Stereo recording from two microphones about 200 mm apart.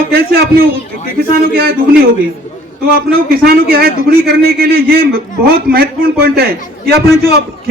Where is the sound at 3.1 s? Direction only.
50° right (ahead or behind).